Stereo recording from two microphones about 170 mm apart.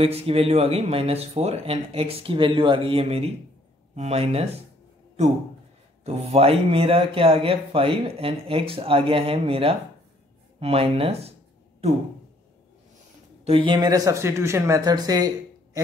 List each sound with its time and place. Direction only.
0.0 s speech: 35° right (ahead or behind)
6.0 s speech: 40° right (ahead or behind)
13.4 s speech: 35° right (ahead or behind)